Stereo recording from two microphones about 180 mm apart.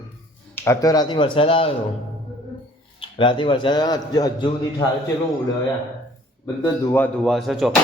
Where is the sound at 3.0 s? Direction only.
25° left (ahead or behind).